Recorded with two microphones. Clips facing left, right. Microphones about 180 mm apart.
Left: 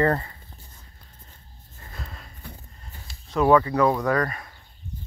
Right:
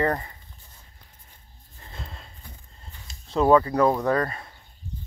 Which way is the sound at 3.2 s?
25° right (ahead or behind).